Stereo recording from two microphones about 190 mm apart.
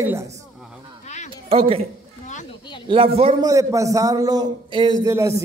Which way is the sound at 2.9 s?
25° right (ahead or behind).